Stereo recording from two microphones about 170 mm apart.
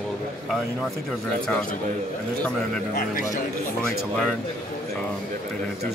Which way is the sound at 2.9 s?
55° left (ahead or behind).